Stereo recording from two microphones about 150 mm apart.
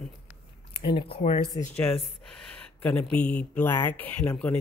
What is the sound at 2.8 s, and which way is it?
Speech, 10° left (ahead or behind).